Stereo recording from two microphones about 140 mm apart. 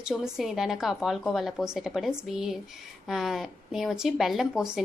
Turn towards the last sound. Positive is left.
turn(degrees=-5)  # may be behind; listen again after turning